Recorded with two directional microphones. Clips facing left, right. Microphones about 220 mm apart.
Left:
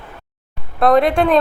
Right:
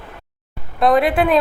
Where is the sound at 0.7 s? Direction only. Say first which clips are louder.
Left 2 dB; centre (ahead or behind).